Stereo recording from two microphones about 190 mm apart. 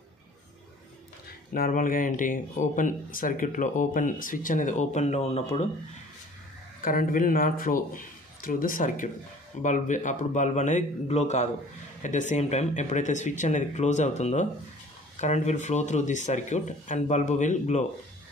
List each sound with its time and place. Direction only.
1.5 s speech: 45° left (ahead or behind)
6.8 s speech: 45° left (ahead or behind)